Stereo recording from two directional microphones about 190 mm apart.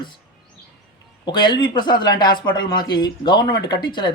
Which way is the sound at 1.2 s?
25° left (ahead or behind).